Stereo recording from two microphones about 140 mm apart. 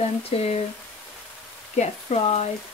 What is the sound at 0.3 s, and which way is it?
Speech, 45° left (ahead or behind).